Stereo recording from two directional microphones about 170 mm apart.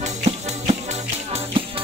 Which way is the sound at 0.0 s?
40° right (ahead or behind).